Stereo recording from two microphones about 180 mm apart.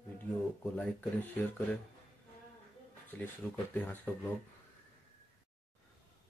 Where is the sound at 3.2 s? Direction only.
10° left (ahead or behind).